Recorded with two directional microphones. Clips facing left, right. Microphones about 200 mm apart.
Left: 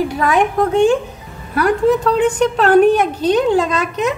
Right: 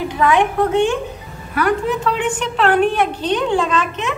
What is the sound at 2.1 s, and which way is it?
A woman's voice, 40° left (ahead or behind).